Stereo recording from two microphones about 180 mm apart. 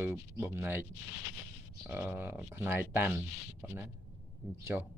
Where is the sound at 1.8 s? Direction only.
5° right (ahead or behind).